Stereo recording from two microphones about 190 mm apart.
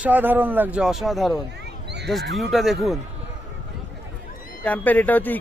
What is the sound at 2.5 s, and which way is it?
Speech, centre (ahead or behind).